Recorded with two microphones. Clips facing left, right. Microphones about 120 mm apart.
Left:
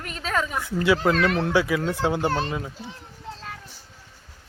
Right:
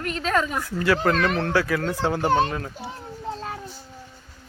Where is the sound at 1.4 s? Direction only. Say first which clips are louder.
Left 1 dB; 10° left (ahead or behind).